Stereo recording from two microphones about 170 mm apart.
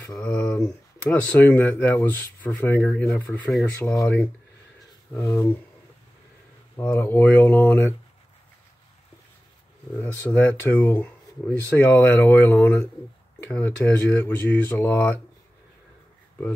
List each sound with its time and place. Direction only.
0.2 s a sound: 5° left (ahead or behind)
1.1 s speech: 10° left (ahead or behind)
5.1 s speech: 20° left (ahead or behind)
6.8 s speech: 10° left (ahead or behind)
9.9 s speech: 10° left (ahead or behind)